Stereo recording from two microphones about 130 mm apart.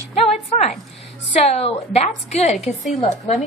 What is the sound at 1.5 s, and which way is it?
A woman's voice, 55° left (ahead or behind).